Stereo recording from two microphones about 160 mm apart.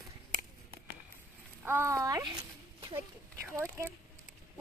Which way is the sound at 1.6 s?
15° right (ahead or behind).